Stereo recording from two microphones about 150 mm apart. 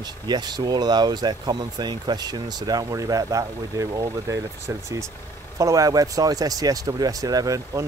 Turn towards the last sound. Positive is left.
turn(degrees=-25)  # may be behind; listen again after turning